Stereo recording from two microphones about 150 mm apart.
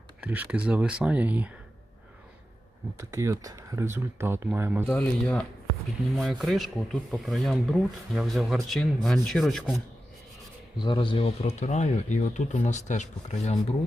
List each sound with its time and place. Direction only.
0.2 s speech: 10° right (ahead or behind)
3.0 s speech: 20° right (ahead or behind)
4.9 s speech: 5° left (ahead or behind)
10.8 s speech: 35° left (ahead or behind); by 13.7 s 50° left (ahead or behind)